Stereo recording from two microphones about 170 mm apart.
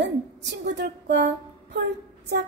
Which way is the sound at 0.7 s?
80° right.